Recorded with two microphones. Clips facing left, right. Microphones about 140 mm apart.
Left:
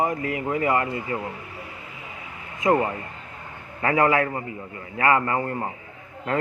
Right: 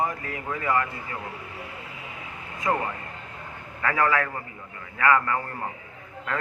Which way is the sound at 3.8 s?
25° left (ahead or behind).